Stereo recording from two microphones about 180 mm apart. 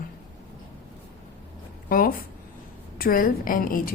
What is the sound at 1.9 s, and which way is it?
A woman's voice, 50° left (ahead or behind).